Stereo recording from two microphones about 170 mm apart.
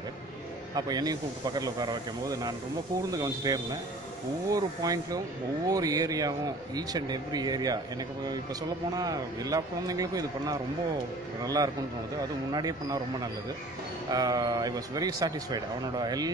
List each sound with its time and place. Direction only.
0.7 s speech: 25° right (ahead or behind)